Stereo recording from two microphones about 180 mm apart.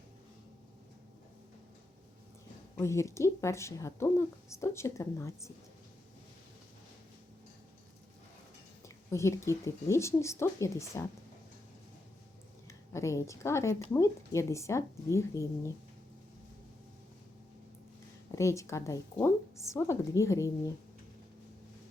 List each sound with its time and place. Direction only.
2.7 s speech: 15° left (ahead or behind)
9.1 s speech: 15° left (ahead or behind)
12.9 s speech: 15° left (ahead or behind)
18.3 s speech: 15° left (ahead or behind)